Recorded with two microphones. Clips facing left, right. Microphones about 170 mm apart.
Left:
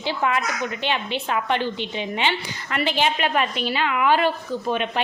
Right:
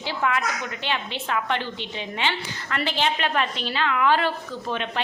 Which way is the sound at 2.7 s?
15° left (ahead or behind).